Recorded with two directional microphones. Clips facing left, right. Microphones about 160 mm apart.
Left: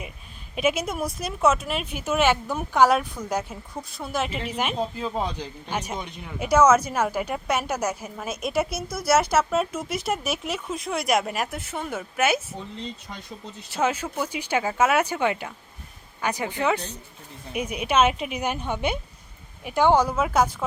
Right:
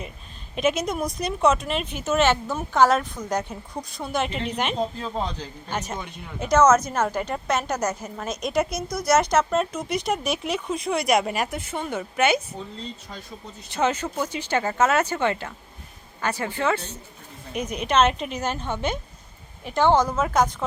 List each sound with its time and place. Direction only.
0.5 s speech: 10° left (ahead or behind)
13.7 s speech: 5° left (ahead or behind)